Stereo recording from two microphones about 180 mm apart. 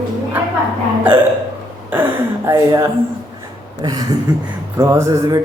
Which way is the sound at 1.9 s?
15° right (ahead or behind).